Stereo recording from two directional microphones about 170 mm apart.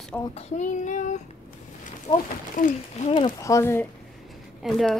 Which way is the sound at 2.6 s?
45° left (ahead or behind).